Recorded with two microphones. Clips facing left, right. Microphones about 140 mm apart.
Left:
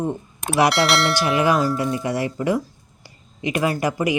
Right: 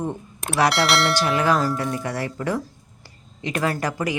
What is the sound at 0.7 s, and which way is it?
Speech, centre (ahead or behind).